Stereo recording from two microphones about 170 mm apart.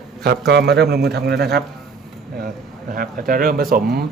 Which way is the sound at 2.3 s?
60° right (ahead or behind).